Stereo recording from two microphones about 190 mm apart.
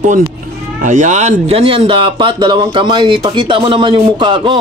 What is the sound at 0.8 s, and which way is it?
Speech, 40° right (ahead or behind).